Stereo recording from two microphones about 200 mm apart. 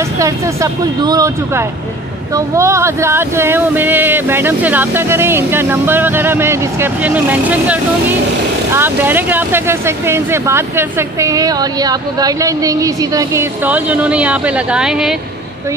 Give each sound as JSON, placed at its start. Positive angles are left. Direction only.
{"t": 0.2, "sound": "speech", "side_deg": -15}